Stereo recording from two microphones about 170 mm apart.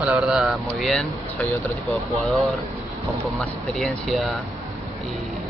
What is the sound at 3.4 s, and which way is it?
Speech, centre (ahead or behind).